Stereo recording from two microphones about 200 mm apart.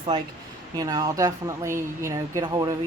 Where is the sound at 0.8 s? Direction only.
20° right (ahead or behind).